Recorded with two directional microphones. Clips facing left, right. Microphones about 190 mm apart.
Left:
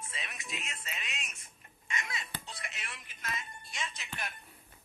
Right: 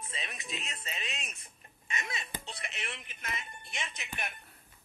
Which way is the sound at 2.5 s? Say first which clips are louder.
Right 4 dB; 25° right (ahead or behind).